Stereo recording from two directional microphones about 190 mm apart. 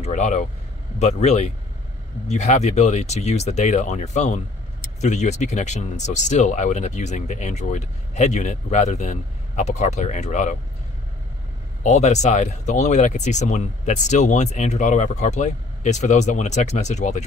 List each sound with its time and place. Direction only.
0.0 s speech: 40° left (ahead or behind)
11.8 s speech: 35° left (ahead or behind)